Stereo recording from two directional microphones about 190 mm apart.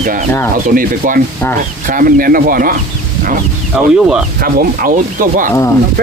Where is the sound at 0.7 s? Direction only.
45° right (ahead or behind).